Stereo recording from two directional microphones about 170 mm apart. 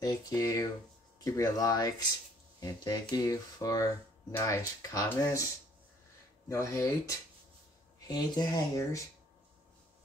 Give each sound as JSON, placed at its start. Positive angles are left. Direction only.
{"t": 0.0, "sound": "a sound", "side_deg": 20}
{"t": 1.2, "sound": "speech", "side_deg": 20}
{"t": 6.5, "sound": "speech", "side_deg": 15}